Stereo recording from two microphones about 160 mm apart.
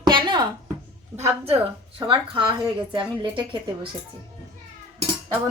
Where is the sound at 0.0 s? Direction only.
30° right (ahead or behind).